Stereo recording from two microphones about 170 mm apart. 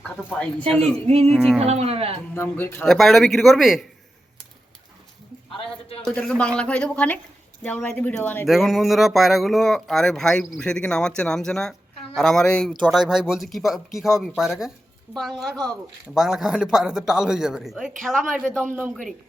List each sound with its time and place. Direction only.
0.2 s speech: 5° right (ahead or behind)
1.0 s speech: 35° right (ahead or behind)
1.3 s speech: centre (ahead or behind)
1.5 s speech: 35° right (ahead or behind)
2.3 s speech: 15° left (ahead or behind)
2.8 s speech: centre (ahead or behind)
5.5 s a sound: 30° left (ahead or behind)
6.0 s speech: 5° left (ahead or behind)
8.4 s speech: centre (ahead or behind)
18.7 s a man's voice: 10° right (ahead or behind)